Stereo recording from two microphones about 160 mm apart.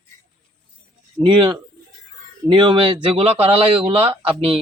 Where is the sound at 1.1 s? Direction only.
30° right (ahead or behind).